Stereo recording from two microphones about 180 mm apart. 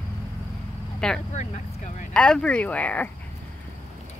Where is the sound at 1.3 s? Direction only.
40° left (ahead or behind).